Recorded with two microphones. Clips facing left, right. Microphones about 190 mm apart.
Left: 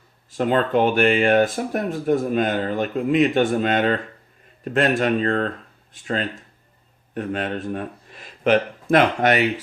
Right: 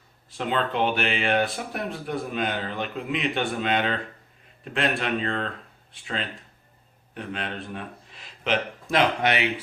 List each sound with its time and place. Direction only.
0.3 s speech: 45° left (ahead or behind)